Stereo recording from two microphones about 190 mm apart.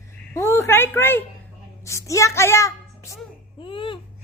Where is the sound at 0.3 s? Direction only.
15° left (ahead or behind).